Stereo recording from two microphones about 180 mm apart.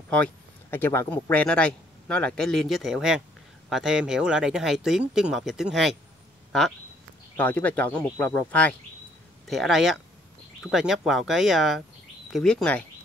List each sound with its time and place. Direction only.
0.1 s speech: 10° left (ahead or behind)
7.3 s speech: 10° left (ahead or behind)